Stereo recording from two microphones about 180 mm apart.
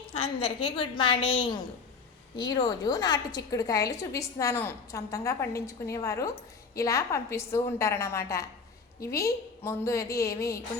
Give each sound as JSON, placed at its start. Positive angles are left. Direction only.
{"t": 0.1, "sound": "a woman's voice", "side_deg": 30}